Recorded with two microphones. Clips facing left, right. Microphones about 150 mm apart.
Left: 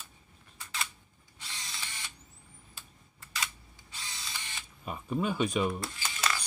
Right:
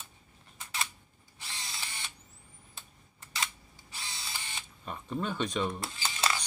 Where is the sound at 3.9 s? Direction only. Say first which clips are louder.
Right 1 dB; 30° right (ahead or behind).